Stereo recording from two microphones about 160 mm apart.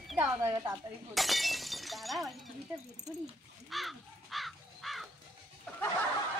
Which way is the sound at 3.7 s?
Centre (ahead or behind).